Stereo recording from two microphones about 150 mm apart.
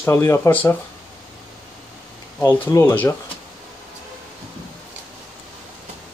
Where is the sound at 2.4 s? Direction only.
15° left (ahead or behind).